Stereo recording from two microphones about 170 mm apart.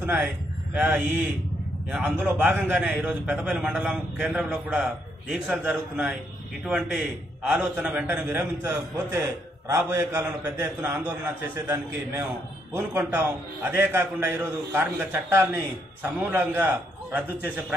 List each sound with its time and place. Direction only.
0.0 s a man's voice: 10° right (ahead or behind)